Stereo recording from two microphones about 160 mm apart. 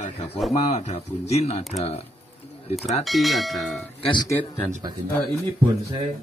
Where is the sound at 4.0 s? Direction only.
30° left (ahead or behind).